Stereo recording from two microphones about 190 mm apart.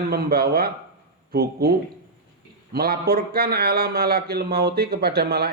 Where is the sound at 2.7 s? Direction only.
55° right (ahead or behind).